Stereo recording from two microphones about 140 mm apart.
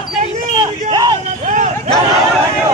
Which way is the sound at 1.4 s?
65° right (ahead or behind).